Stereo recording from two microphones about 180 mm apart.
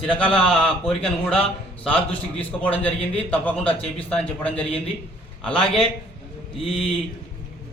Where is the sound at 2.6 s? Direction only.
10° left (ahead or behind).